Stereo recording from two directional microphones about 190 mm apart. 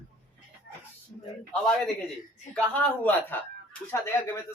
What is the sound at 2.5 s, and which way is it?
Speech, 5° left (ahead or behind).